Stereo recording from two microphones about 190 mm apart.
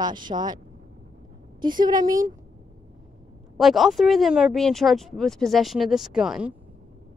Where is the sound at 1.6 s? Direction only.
20° right (ahead or behind).